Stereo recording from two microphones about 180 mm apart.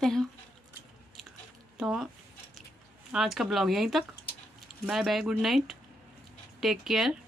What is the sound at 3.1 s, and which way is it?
Speech, centre (ahead or behind).